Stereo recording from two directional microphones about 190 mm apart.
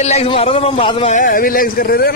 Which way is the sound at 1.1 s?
50° left (ahead or behind).